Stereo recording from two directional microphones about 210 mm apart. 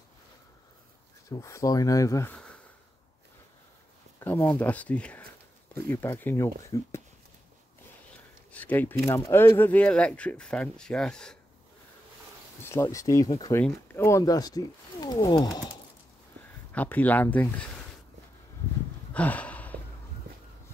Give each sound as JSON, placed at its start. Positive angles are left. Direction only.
{"t": 1.3, "sound": "speech", "side_deg": 15}
{"t": 4.2, "sound": "speech", "side_deg": 10}
{"t": 8.5, "sound": "speech", "side_deg": 5}
{"t": 12.6, "sound": "speech", "side_deg": 15}
{"t": 16.7, "sound": "speech", "side_deg": 10}
{"t": 19.1, "sound": "a sound", "side_deg": 5}